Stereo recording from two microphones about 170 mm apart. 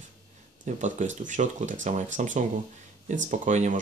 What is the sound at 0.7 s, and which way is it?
Speech, 45° right (ahead or behind).